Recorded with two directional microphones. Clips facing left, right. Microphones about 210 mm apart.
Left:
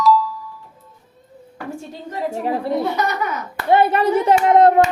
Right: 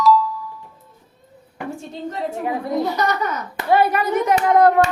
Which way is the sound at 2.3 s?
35° left (ahead or behind).